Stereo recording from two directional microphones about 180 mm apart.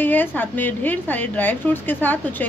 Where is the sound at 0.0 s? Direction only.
10° left (ahead or behind).